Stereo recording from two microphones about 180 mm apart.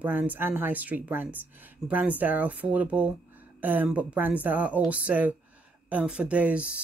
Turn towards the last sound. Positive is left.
turn(degrees=-5)  # may be behind; listen again after turning